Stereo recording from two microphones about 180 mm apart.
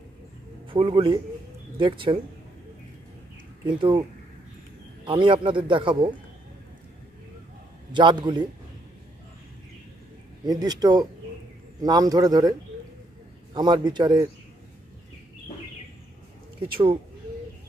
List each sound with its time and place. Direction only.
0.7 s a man's voice: 25° right (ahead or behind)
3.6 s a man's voice: 25° right (ahead or behind)
5.0 s a man's voice: 30° right (ahead or behind)
7.9 s a man's voice: 25° right (ahead or behind)
10.4 s a man's voice: 20° right (ahead or behind)
16.6 s a man's voice: 30° right (ahead or behind)